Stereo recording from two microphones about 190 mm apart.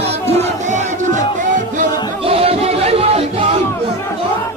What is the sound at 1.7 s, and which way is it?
Music, 30° right (ahead or behind).